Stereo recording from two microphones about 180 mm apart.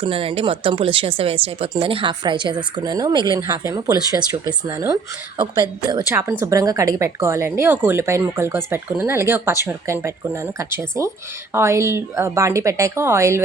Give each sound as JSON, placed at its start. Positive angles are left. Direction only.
{"t": 0.0, "sound": "a woman's voice", "side_deg": -30}